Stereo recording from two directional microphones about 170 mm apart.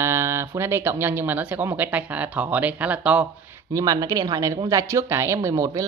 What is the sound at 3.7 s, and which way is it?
A woman's voice, 20° right (ahead or behind).